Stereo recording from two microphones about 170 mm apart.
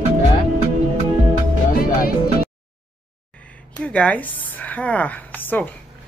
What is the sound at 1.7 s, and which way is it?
Music, 60° left (ahead or behind).